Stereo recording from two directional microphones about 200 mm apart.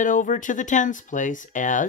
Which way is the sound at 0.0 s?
40° left (ahead or behind).